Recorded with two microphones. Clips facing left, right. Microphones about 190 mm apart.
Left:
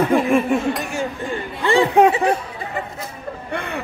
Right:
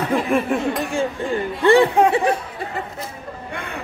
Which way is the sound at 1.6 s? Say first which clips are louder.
Right 4 dB; 60° right (ahead or behind).